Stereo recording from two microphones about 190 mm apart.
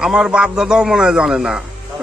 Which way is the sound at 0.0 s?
5° right (ahead or behind).